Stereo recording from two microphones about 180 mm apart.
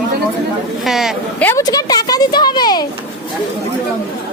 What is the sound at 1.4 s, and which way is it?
A woman's voice, 20° left (ahead or behind).